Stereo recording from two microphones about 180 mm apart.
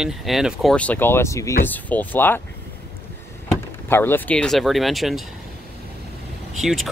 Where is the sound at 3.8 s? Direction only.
10° left (ahead or behind).